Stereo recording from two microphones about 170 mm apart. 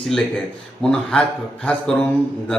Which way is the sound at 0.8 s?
5° left (ahead or behind).